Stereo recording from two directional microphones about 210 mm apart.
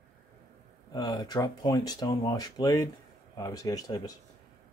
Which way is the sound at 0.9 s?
20° left (ahead or behind).